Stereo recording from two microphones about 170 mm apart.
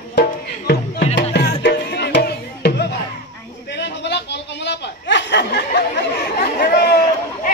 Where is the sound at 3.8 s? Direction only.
90° left; by 6.9 s 65° left (ahead or behind).